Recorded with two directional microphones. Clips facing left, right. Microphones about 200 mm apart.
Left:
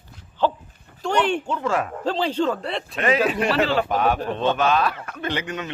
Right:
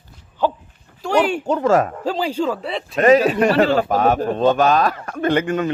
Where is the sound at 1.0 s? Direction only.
5° right (ahead or behind).